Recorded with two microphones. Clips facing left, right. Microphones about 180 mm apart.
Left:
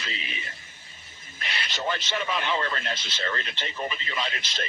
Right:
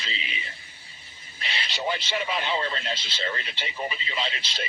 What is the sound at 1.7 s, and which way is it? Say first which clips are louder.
Speech: right 1 dB; 15° right (ahead or behind).